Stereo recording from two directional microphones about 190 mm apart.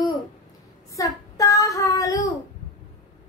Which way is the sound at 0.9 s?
15° left (ahead or behind).